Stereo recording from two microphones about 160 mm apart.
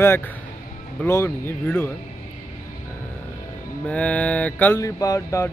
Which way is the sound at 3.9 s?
10° left (ahead or behind).